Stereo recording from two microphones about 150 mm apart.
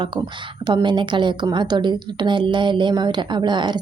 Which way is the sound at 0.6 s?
30° right (ahead or behind).